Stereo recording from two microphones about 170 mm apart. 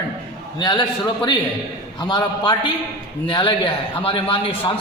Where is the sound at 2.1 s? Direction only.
25° left (ahead or behind).